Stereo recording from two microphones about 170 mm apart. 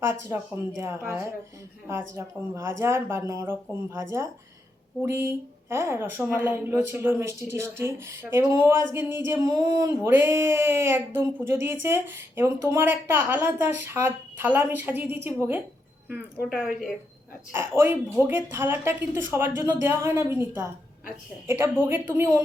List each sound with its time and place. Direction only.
0.1 s speech: 15° right (ahead or behind)
17.5 s speech: 15° right (ahead or behind)